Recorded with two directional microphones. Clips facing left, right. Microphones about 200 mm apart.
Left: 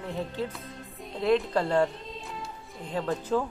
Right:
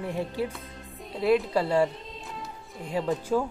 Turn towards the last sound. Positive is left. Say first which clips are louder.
# right 2 dB
turn(degrees=-5)  # may be behind; listen again after turning